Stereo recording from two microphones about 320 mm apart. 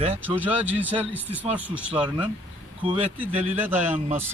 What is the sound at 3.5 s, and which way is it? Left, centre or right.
Speech, centre.